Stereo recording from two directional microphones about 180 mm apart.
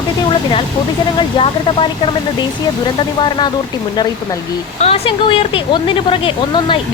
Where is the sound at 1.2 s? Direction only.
30° left (ahead or behind).